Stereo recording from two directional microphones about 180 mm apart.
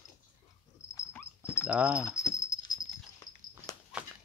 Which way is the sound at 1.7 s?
5° right (ahead or behind).